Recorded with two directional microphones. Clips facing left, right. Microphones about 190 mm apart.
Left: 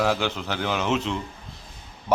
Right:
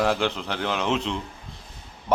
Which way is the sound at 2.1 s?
5° left (ahead or behind).